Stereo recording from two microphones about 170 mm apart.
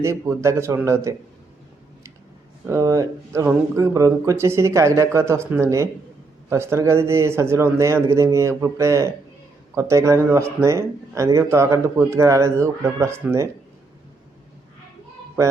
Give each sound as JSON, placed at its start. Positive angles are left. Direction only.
{"t": 0.0, "sound": "speech", "side_deg": -15}
{"t": 2.6, "sound": "speech", "side_deg": -20}